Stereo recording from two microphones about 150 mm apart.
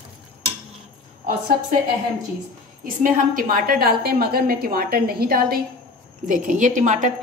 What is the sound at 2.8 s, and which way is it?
A woman's voice, 70° right (ahead or behind).